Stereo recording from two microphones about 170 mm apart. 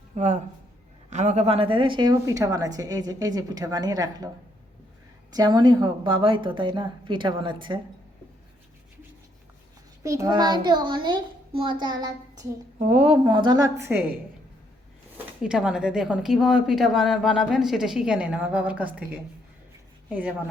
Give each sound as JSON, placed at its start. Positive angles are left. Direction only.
{"t": 0.2, "sound": "speech", "side_deg": -45}
{"t": 5.3, "sound": "speech", "side_deg": -25}
{"t": 10.0, "sound": "speech", "side_deg": -20}
{"t": 12.8, "sound": "speech", "side_deg": -40}
{"t": 15.4, "sound": "a woman's voice", "side_deg": -5}